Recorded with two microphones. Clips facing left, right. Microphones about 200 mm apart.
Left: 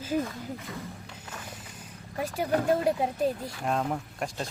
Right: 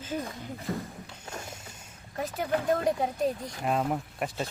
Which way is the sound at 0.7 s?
50° right (ahead or behind).